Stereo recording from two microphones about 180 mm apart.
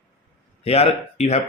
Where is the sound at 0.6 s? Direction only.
35° left (ahead or behind).